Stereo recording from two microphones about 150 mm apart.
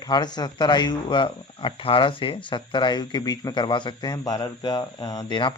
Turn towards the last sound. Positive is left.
turn(degrees=30)  # may be behind; listen again after turning